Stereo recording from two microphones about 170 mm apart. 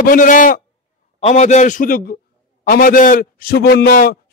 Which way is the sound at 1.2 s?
40° left (ahead or behind).